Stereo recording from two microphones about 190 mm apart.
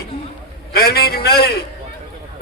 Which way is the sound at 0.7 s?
55° left (ahead or behind).